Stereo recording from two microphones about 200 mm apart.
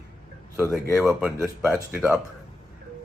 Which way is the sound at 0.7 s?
Centre (ahead or behind).